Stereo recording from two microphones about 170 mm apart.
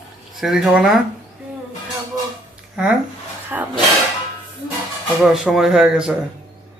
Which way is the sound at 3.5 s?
10° right (ahead or behind).